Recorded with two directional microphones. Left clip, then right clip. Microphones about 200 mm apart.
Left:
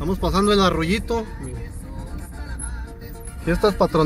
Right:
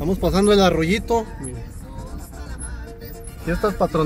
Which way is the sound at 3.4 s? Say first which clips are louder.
Left 2 dB; 15° left (ahead or behind).